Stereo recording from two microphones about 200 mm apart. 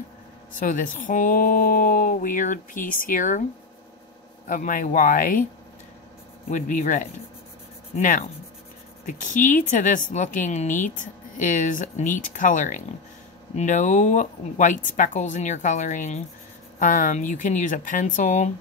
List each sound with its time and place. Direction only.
0.6 s speech: 40° left (ahead or behind)
4.5 s speech: 40° left (ahead or behind)
6.5 s speech: 40° left (ahead or behind)